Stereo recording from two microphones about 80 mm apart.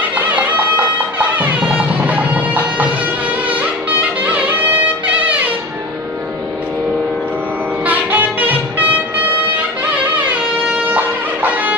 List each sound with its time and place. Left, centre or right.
0.1 s music: centre
7.8 s music: centre